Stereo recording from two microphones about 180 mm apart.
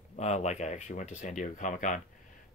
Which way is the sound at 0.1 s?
40° left (ahead or behind).